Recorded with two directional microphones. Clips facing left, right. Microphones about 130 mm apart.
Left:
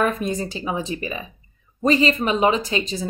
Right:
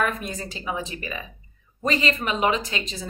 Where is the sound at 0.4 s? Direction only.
30° left (ahead or behind).